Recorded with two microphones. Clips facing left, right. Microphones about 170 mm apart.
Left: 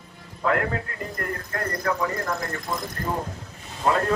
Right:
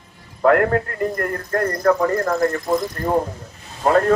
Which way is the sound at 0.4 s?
55° right (ahead or behind).